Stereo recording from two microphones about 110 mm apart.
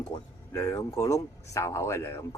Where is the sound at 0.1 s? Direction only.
30° left (ahead or behind).